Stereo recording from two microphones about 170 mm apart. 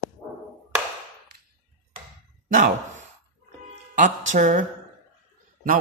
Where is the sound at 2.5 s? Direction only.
50° right (ahead or behind).